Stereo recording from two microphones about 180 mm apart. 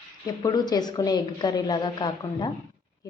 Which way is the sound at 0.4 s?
20° left (ahead or behind).